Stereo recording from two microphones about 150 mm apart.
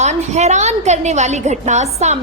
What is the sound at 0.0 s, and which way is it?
A woman's voice, 50° right (ahead or behind).